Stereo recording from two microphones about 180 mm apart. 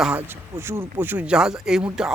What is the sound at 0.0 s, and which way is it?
A man's voice, 10° right (ahead or behind).